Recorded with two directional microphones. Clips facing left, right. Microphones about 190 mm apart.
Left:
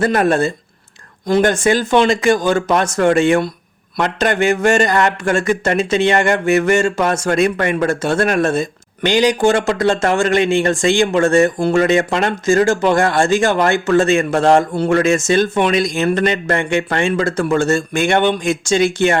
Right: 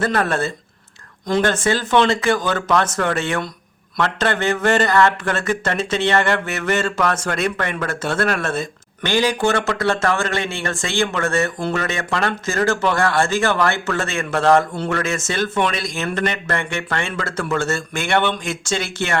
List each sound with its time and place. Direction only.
0.0 s speech: 15° left (ahead or behind)